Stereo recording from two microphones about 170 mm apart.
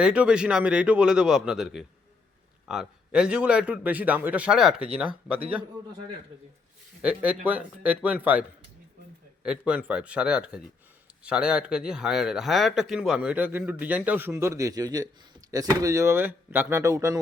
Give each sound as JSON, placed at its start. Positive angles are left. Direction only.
{"t": 0.0, "sound": "speech", "side_deg": -5}
{"t": 7.0, "sound": "speech", "side_deg": -5}